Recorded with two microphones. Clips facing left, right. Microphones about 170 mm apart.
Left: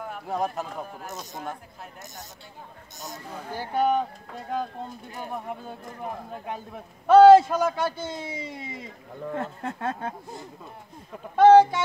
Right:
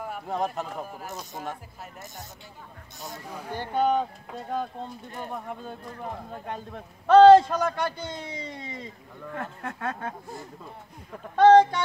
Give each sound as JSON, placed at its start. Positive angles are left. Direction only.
{"t": 0.0, "sound": "speech", "side_deg": 0}
{"t": 3.3, "sound": "a man's voice", "side_deg": 10}
{"t": 5.1, "sound": "a man's voice", "side_deg": 5}
{"t": 9.3, "sound": "speech", "side_deg": 25}
{"t": 11.2, "sound": "a man's voice", "side_deg": 10}